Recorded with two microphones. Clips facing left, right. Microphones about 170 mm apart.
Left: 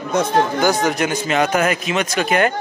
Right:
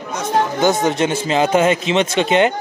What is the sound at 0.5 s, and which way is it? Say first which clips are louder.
Speech: right 1 dB; 20° right (ahead or behind).